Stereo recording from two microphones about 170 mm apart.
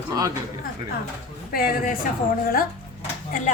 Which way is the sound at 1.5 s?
60° left (ahead or behind).